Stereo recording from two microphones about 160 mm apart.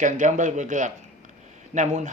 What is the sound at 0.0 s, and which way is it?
Speech, 50° right (ahead or behind).